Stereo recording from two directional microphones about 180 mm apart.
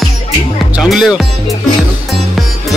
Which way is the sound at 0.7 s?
5° right (ahead or behind).